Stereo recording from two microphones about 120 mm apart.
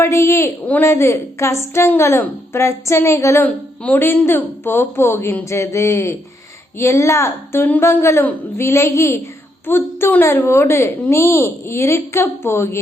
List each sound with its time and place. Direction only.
0.0 s a woman's voice: 25° left (ahead or behind)